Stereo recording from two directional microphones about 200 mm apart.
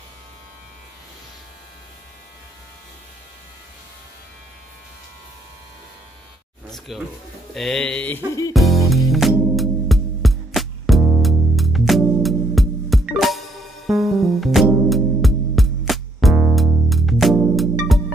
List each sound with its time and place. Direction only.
6.9 s mantra: centre (ahead or behind)
8.3 s music: 15° left (ahead or behind)
8.5 s music: centre (ahead or behind)